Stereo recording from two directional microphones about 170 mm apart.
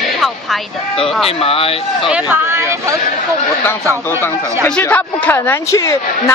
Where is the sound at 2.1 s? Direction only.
10° right (ahead or behind).